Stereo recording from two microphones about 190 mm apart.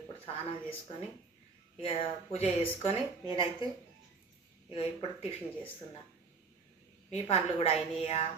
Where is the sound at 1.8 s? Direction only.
30° left (ahead or behind).